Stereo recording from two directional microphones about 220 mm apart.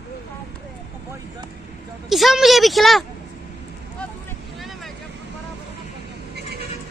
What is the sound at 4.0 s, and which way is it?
Vehicle, 5° left (ahead or behind).